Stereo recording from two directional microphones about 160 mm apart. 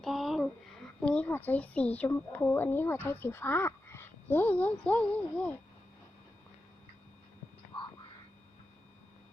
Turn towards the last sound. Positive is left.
turn(degrees=30)  # may be behind; listen again after turning